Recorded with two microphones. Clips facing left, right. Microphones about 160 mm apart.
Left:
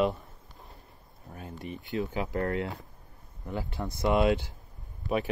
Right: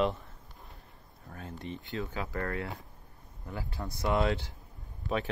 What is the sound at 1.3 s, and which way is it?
Speech, 15° left (ahead or behind).